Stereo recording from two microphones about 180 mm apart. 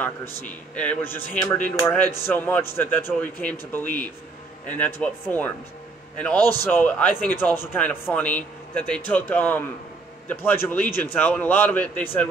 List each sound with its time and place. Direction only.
0.0 s speech: 10° left (ahead or behind)